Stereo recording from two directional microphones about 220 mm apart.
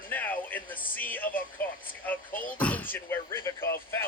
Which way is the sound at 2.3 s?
40° left (ahead or behind).